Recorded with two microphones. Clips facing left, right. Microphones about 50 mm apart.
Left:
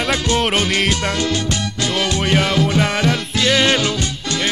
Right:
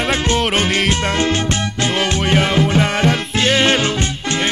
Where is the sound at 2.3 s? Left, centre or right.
Right.